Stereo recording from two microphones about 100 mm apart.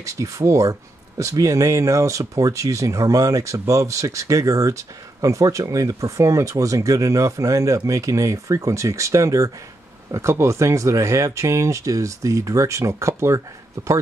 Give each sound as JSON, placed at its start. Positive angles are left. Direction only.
{"t": 0.0, "sound": "speech", "side_deg": -30}